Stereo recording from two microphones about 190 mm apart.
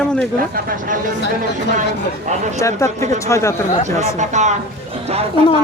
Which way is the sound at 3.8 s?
40° right (ahead or behind).